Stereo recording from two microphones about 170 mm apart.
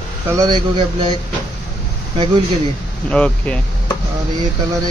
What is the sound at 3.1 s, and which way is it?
Speech, 5° left (ahead or behind).